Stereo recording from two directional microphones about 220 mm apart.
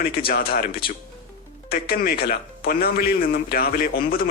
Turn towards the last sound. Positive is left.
turn(degrees=40)  # may be behind; listen again after turning